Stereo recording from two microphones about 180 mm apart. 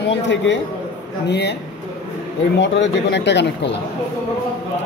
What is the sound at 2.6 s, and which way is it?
Speech, 80° left.